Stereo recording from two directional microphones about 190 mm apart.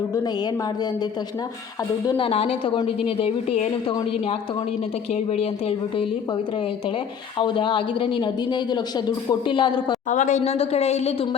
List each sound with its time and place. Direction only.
2.0 s a woman's voice: 25° left (ahead or behind)
7.3 s speech: 25° left (ahead or behind)
10.1 s a woman's voice: 40° left (ahead or behind)